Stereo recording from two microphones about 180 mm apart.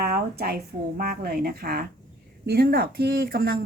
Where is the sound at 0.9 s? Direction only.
55° right (ahead or behind).